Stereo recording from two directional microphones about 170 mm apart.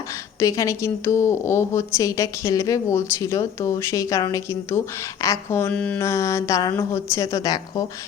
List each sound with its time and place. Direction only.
0.3 s a woman's voice: 20° left (ahead or behind)